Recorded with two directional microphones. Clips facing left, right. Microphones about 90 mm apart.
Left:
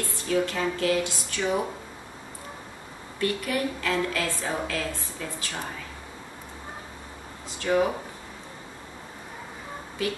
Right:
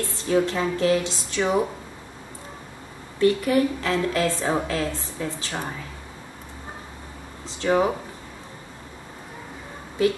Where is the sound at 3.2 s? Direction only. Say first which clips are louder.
Right 8 dB; 25° right (ahead or behind).